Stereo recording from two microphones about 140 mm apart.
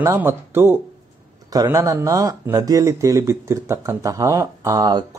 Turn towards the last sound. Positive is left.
turn(degrees=-25)  # may be behind; listen again after turning